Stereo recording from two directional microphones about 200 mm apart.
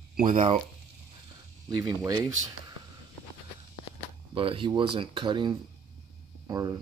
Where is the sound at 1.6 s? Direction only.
20° right (ahead or behind).